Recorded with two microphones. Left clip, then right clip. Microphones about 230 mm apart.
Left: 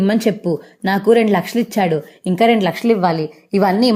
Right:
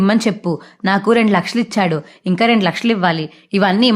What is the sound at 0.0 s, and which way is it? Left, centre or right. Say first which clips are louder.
Speech: even; centre.